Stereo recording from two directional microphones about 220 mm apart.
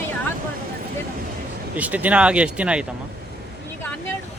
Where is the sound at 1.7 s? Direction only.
5° right (ahead or behind).